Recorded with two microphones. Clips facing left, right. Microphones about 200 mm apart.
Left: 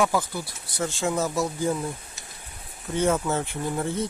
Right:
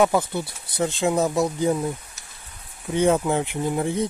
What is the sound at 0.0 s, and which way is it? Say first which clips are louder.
Speech: right 4 dB; 25° right (ahead or behind).